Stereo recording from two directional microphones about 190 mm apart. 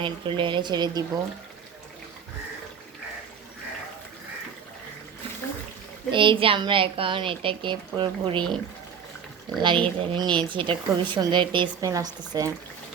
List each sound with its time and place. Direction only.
0.0 s a woman's voice: 25° right (ahead or behind)
6.1 s a woman's voice: 25° right (ahead or behind)
9.6 s a woman's voice: 25° right (ahead or behind)